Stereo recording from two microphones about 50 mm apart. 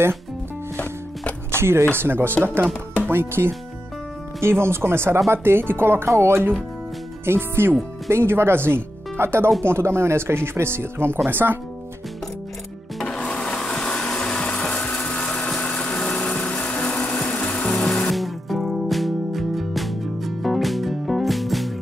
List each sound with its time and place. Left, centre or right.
1.5 s speech: right
11.2 s speech: right
13.0 s printer: centre
13.8 s a sound: left
15.8 s engine: left
17.4 s music: left
18.1 s music: centre